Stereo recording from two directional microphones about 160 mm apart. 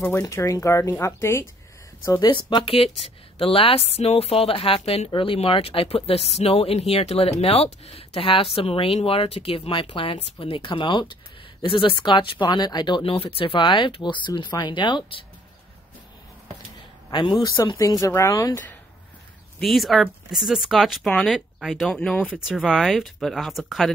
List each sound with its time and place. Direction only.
0.0 s speech: 20° left (ahead or behind)
2.0 s speech: 25° left (ahead or behind)
17.1 s speech: 25° left (ahead or behind)
19.6 s speech: centre (ahead or behind)
22.5 s speech: 5° right (ahead or behind)